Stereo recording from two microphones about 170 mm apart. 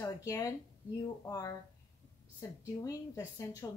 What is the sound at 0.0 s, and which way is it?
Speech, 20° left (ahead or behind).